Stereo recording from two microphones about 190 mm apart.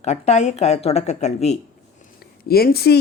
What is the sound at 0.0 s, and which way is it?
Speech, 35° left (ahead or behind).